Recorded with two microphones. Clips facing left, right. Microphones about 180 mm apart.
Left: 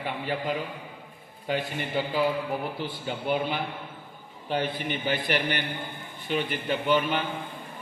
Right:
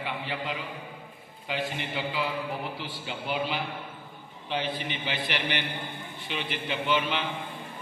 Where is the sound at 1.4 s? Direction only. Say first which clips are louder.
Left 3 dB; 45° left (ahead or behind).